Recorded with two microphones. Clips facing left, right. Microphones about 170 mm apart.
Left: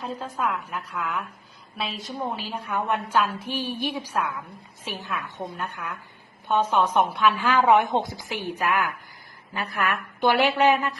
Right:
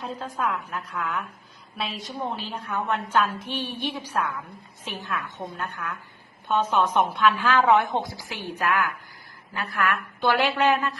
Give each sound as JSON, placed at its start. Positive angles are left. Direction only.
{"t": 0.0, "sound": "a woman's voice", "side_deg": 0}